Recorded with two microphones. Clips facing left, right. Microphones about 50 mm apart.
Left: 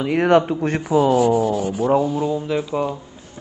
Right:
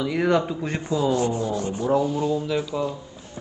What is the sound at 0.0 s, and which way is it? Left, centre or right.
Speech, left.